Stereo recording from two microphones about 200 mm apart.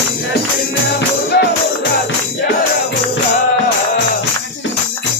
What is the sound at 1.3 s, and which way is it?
Music, 50° left (ahead or behind).